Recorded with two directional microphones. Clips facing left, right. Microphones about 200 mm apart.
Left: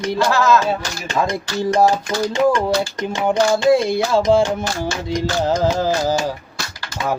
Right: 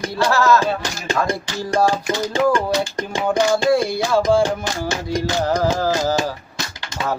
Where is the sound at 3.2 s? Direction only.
20° left (ahead or behind).